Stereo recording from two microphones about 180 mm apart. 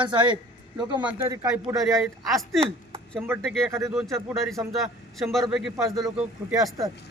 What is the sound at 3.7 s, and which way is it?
Speech, 15° right (ahead or behind).